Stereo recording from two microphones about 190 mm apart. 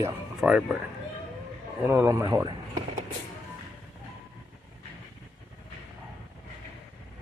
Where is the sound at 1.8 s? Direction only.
15° right (ahead or behind).